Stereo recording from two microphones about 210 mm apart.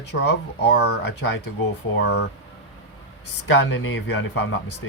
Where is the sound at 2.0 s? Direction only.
55° left (ahead or behind).